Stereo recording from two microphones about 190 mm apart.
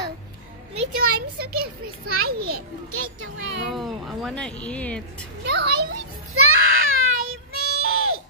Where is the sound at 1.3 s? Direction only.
55° right (ahead or behind).